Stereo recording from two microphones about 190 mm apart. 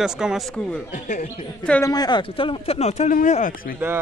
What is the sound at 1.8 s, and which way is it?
Speech, 20° left (ahead or behind).